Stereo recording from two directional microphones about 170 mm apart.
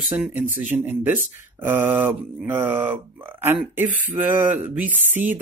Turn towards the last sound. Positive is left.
turn(degrees=-10)  # may be behind; listen again after turning